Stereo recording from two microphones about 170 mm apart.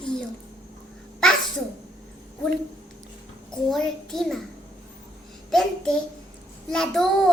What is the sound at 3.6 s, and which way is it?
Speech, centre (ahead or behind).